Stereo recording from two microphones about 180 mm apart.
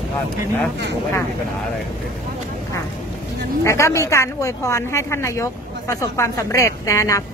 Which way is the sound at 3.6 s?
15° left (ahead or behind).